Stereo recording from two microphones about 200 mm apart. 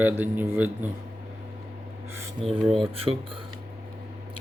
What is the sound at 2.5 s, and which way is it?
Speech, centre (ahead or behind).